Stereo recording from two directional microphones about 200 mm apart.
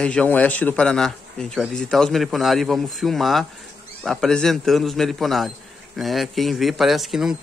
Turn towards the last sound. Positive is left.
turn(degrees=0)  # may be behind; listen again after turning